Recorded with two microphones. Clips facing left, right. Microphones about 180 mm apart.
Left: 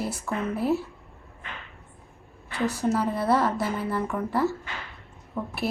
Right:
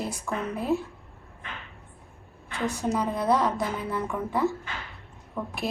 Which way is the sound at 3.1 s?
15° right (ahead or behind).